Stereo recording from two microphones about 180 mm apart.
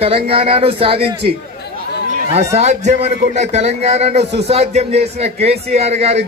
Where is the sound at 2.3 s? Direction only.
35° right (ahead or behind).